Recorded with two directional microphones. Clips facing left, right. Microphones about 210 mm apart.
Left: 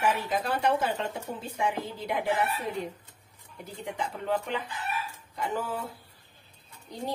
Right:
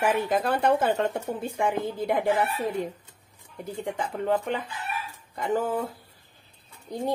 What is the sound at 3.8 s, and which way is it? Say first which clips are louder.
Speech: right 4 dB; 50° right (ahead or behind).